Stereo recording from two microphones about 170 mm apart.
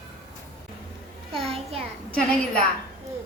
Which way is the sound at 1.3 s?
35° right (ahead or behind).